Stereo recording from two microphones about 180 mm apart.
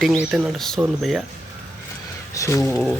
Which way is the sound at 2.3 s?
15° left (ahead or behind).